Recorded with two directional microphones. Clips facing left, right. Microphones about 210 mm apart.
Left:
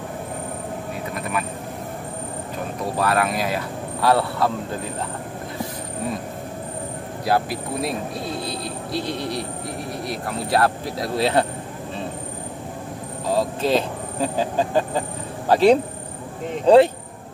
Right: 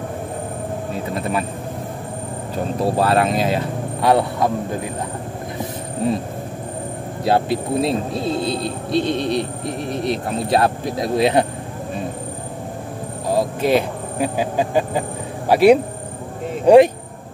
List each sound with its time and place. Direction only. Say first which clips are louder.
1.1 s vehicle: right 5 dB; 30° right (ahead or behind)
2.8 s speech: right 4 dB; 30° right (ahead or behind)
7.2 s speech: right 4 dB; 25° right (ahead or behind)
13.3 s speech: right 3 dB; 15° right (ahead or behind)